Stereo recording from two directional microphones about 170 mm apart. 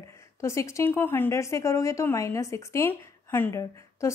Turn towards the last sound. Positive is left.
turn(degrees=20)  # may be behind; listen again after turning